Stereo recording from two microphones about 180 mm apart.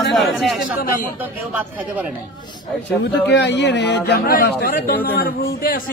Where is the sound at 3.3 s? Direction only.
75° left (ahead or behind).